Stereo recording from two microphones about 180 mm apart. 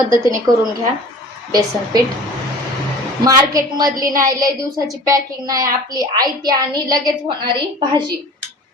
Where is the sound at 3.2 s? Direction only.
20° right (ahead or behind).